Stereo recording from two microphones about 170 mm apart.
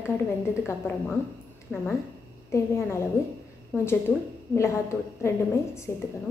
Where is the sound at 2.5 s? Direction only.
15° left (ahead or behind).